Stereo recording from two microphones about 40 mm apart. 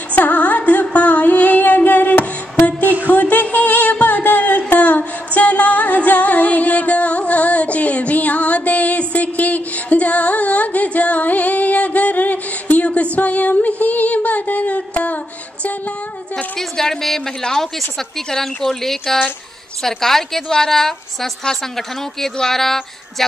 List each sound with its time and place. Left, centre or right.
0.1 s music: left
16.5 s a sound: centre
17.4 s a woman's voice: centre